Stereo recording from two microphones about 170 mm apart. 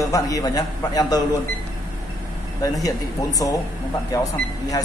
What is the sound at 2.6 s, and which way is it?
Speech, 20° left (ahead or behind).